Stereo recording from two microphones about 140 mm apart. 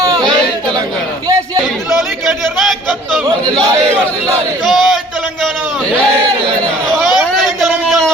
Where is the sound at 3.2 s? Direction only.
25° right (ahead or behind).